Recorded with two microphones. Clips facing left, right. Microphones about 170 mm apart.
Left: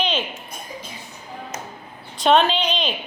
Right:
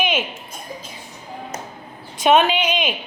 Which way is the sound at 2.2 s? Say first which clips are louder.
Right 1 dB; 10° right (ahead or behind).